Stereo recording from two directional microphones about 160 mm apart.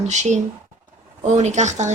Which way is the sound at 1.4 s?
45° right (ahead or behind).